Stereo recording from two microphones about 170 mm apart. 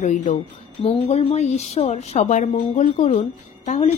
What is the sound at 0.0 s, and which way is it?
A woman's voice, 45° left (ahead or behind).